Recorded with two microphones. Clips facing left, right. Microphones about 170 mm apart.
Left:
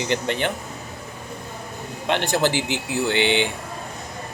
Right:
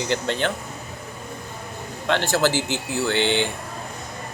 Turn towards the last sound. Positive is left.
turn(degrees=15)  # may be behind; listen again after turning